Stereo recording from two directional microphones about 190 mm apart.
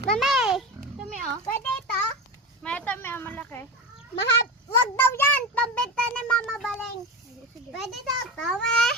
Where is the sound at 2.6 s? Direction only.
10° left (ahead or behind).